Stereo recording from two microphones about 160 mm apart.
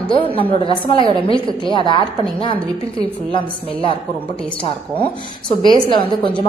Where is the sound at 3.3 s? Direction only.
35° left (ahead or behind).